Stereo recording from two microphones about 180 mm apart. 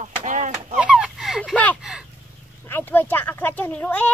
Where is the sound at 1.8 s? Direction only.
5° right (ahead or behind).